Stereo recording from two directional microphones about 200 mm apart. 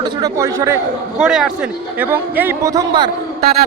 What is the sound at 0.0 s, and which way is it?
Speech, 15° right (ahead or behind).